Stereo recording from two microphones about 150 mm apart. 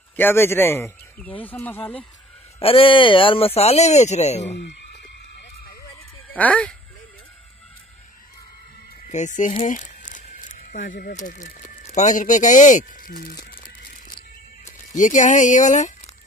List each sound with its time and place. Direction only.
0.1 s speech: 15° left (ahead or behind)
2.6 s speech: 35° left (ahead or behind)
6.3 s speech: 10° left (ahead or behind)
9.0 s speech: 55° left (ahead or behind)
9.7 s a sound: 60° left (ahead or behind)
15.0 s speech: 55° left (ahead or behind)